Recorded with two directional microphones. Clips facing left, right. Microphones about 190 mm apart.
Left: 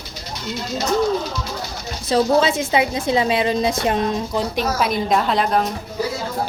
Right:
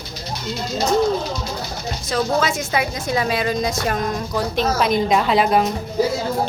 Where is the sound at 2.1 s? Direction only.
30° left (ahead or behind).